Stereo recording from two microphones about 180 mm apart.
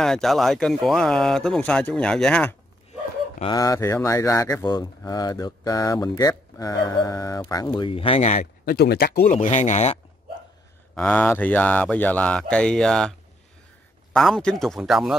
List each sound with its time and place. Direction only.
0.0 s speech: centre (ahead or behind)
3.3 s speech: 25° left (ahead or behind); by 8.5 s 40° left (ahead or behind)
8.6 s speech: 60° left (ahead or behind)
9.2 s speech: 45° left (ahead or behind)
11.0 s speech: 10° left (ahead or behind)
14.1 s speech: 5° left (ahead or behind)